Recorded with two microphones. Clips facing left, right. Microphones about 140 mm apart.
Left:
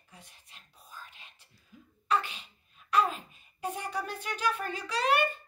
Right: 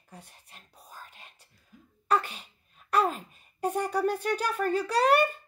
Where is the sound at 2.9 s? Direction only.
40° right (ahead or behind).